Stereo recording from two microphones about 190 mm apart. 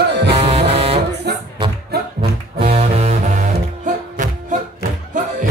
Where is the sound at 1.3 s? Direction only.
60° right (ahead or behind).